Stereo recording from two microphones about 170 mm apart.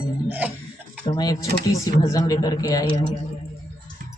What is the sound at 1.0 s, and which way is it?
Speech, 25° left (ahead or behind).